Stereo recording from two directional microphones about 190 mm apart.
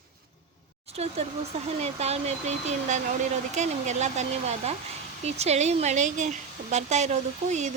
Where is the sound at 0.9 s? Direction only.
35° right (ahead or behind).